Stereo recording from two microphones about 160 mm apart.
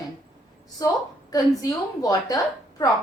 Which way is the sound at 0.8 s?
20° left (ahead or behind).